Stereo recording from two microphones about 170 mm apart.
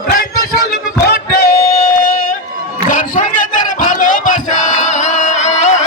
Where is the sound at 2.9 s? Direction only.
50° left (ahead or behind).